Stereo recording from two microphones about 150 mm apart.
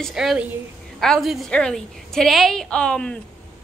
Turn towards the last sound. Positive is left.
turn(degrees=5)  # may be behind; listen again after turning